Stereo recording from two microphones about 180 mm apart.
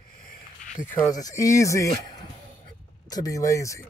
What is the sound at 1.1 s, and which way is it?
Speech, 20° left (ahead or behind).